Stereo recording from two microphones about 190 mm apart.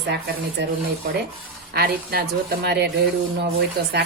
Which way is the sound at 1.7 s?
55° right (ahead or behind).